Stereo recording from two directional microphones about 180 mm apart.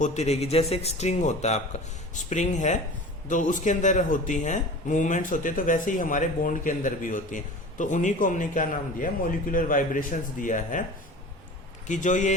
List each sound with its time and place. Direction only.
0.0 s speech: 40° left (ahead or behind)
11.9 s speech: 45° left (ahead or behind)